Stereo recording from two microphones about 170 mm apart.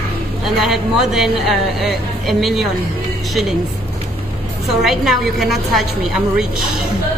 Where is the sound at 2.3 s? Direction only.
Centre (ahead or behind).